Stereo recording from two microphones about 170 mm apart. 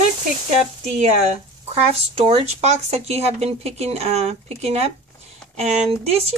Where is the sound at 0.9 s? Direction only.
40° right (ahead or behind).